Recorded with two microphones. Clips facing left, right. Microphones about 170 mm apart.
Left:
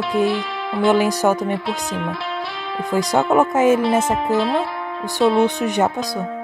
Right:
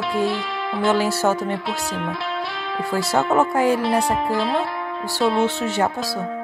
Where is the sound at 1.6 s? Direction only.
Centre (ahead or behind).